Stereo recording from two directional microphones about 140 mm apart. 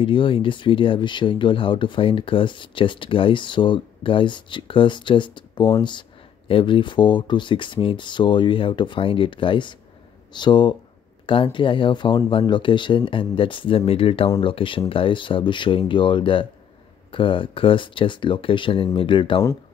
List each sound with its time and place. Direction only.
0.0 s speech: 40° left (ahead or behind)